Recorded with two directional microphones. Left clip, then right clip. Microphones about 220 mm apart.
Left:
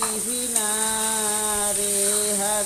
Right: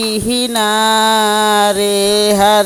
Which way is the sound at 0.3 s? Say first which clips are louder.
Right 16 dB; 45° right (ahead or behind).